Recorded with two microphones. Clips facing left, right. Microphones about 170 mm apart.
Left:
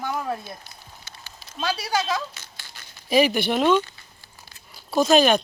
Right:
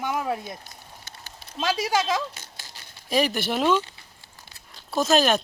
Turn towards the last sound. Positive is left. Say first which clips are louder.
# left 3 dB
turn(degrees=0)  # may be behind; listen again after turning